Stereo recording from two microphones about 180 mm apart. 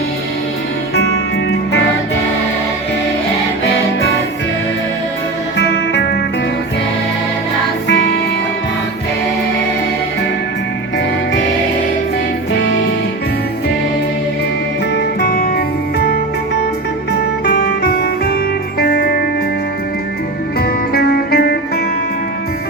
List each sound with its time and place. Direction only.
5.5 s music: 75° left (ahead or behind)
14.9 s music: 65° left (ahead or behind)
17.4 s music: 55° left (ahead or behind)
20.6 s music: 60° left (ahead or behind)